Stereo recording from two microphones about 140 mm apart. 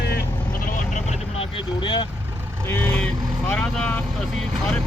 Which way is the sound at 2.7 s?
10° left (ahead or behind).